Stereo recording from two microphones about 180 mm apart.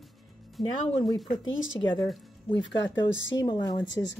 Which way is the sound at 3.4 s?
25° left (ahead or behind).